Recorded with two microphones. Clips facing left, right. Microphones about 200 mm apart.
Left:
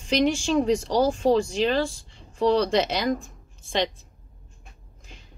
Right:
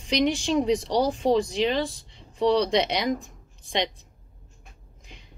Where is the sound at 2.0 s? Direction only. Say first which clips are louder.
Left 1 dB; 20° right (ahead or behind).